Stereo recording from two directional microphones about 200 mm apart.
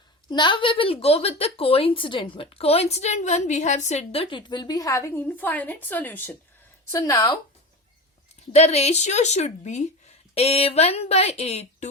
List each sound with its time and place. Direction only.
0.3 s speech: 20° left (ahead or behind)
8.5 s speech: 30° left (ahead or behind)